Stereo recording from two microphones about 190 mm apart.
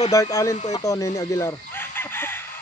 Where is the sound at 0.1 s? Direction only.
15° left (ahead or behind).